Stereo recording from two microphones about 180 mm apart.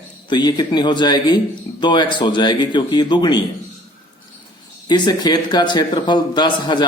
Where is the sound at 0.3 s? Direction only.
25° left (ahead or behind).